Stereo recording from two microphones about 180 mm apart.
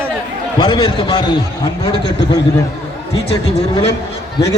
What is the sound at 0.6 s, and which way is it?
Speech, 25° left (ahead or behind).